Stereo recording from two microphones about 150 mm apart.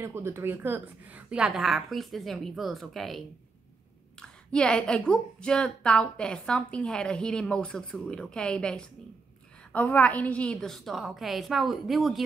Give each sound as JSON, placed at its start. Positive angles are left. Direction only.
{"t": 0.0, "sound": "a woman's voice", "side_deg": -15}